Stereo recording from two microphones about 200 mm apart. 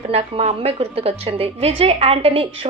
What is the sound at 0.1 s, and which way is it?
A woman's voice, 30° right (ahead or behind).